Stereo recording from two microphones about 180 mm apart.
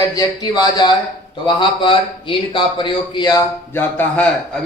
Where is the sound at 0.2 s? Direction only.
20° left (ahead or behind).